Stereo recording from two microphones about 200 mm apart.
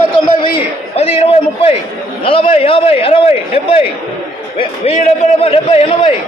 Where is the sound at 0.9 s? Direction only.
30° left (ahead or behind).